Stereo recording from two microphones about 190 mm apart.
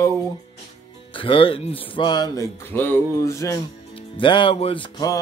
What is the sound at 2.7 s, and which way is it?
Speech, 10° left (ahead or behind).